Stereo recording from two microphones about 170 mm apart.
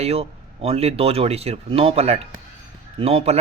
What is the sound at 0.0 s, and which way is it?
Speech, 35° right (ahead or behind).